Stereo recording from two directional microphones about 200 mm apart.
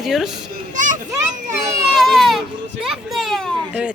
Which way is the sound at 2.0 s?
Centre (ahead or behind).